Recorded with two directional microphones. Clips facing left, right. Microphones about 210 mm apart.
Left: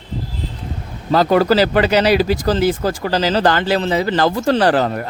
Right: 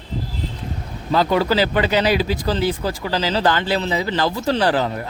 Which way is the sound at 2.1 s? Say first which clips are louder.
Left 5 dB; 45° left (ahead or behind).